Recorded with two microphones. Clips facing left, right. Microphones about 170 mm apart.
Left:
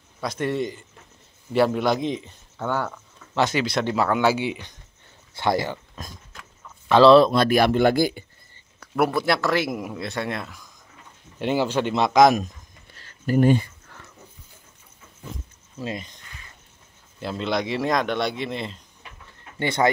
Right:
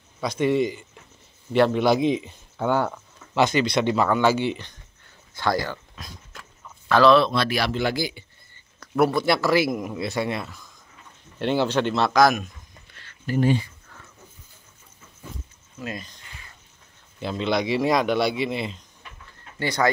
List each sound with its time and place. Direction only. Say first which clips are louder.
0.2 s a man's voice: right 4 dB; centre (ahead or behind)
3.3 s speech: right 2 dB; centre (ahead or behind)
5.3 s speech: left 1 dB; 25° left (ahead or behind)
6.9 s speech: left 4 dB; 30° left (ahead or behind); by 8.3 s 50° left (ahead or behind)
8.7 s speech: right 1 dB; 5° left (ahead or behind)
11.3 s speech: even; 10° left (ahead or behind)
12.9 s a sound: left 4 dB; 40° left (ahead or behind)
13.9 s dog: left 2 dB; 70° left (ahead or behind)
15.8 s speech: left 3 dB; 25° left (ahead or behind)
17.2 s speech: right 1 dB; centre (ahead or behind)
19.6 s speech: left 2 dB; 25° left (ahead or behind)